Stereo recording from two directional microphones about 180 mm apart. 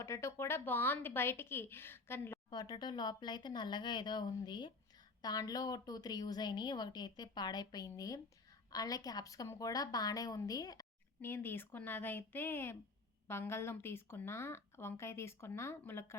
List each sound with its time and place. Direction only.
0.0 s a woman's voice: 15° left (ahead or behind)
2.5 s a woman's voice: 25° left (ahead or behind)